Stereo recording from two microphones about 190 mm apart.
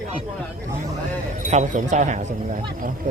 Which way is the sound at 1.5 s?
40° right (ahead or behind).